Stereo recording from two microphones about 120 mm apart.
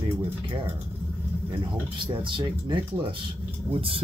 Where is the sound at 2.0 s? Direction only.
45° right (ahead or behind).